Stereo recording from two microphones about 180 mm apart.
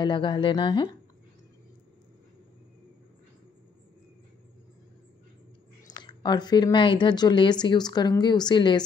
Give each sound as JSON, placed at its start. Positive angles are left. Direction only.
{"t": 0.0, "sound": "speech", "side_deg": 25}
{"t": 5.9, "sound": "speech", "side_deg": 25}